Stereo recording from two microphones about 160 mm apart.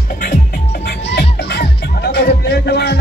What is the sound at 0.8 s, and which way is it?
Music, 90° left.